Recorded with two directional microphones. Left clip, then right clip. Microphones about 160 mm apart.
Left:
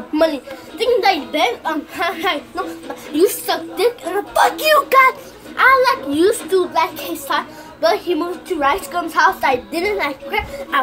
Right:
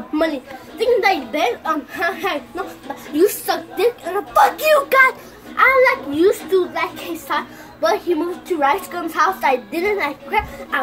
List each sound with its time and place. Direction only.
0.1 s a child's voice: 15° left (ahead or behind)
5.6 s a child's voice: 20° left (ahead or behind)